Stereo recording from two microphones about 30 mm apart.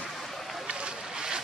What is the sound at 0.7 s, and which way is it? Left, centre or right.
Boat, right.